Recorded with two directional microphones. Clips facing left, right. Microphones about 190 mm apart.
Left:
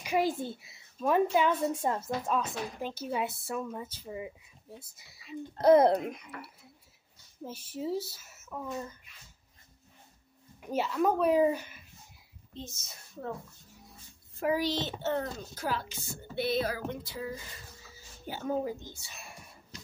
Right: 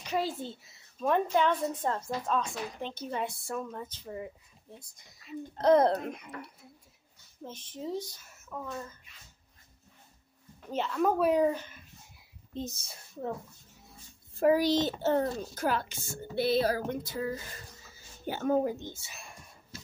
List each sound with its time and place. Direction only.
0.0 s a child's voice: 15° left (ahead or behind)
7.4 s a woman's voice: 10° left (ahead or behind)
10.6 s speech: 10° left (ahead or behind)
12.5 s a child's voice: 35° right (ahead or behind)
14.4 s a child's voice: 40° right (ahead or behind)
15.5 s a sound: 50° right (ahead or behind)
16.3 s a sound: 35° right (ahead or behind); by 18.9 s 55° right (ahead or behind)